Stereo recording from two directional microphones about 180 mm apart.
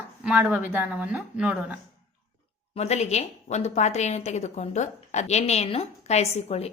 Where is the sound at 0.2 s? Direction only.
5° right (ahead or behind).